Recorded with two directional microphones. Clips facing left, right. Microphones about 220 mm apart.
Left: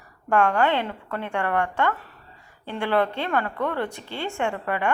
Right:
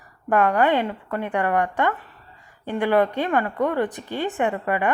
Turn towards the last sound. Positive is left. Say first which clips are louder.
# right 3 dB
turn(degrees=-15)  # may be behind; listen again after turning